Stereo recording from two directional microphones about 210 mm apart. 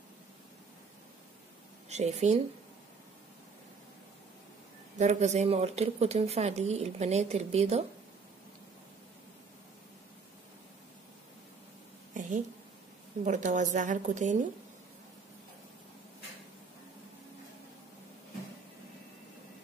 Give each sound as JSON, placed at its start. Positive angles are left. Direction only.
{"t": 1.9, "sound": "speech", "side_deg": -30}
{"t": 4.9, "sound": "speech", "side_deg": -35}
{"t": 12.1, "sound": "a sound", "side_deg": -35}
{"t": 13.2, "sound": "speech", "side_deg": -35}